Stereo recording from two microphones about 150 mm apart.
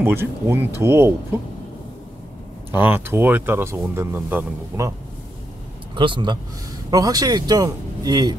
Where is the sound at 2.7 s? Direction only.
15° right (ahead or behind).